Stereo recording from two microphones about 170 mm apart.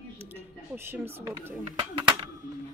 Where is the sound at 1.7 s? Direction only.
30° right (ahead or behind).